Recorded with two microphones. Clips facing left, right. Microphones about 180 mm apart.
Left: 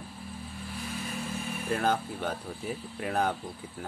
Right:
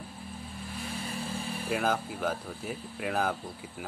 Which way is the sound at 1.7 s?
5° right (ahead or behind).